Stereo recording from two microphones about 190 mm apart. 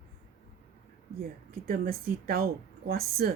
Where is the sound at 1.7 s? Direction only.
55° right (ahead or behind).